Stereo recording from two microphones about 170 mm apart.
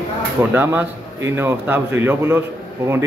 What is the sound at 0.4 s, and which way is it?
A man's voice, 10° right (ahead or behind).